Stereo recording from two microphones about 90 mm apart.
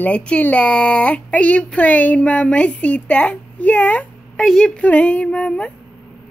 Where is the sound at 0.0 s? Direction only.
15° left (ahead or behind).